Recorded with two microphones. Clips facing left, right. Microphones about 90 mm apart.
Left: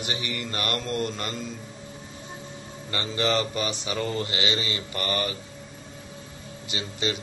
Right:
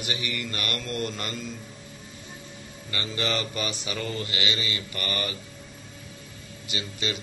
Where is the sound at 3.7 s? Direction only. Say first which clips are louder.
Left 3 dB; 25° left (ahead or behind).